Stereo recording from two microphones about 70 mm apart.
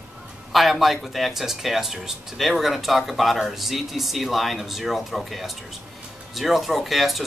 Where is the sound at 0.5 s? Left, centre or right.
Centre.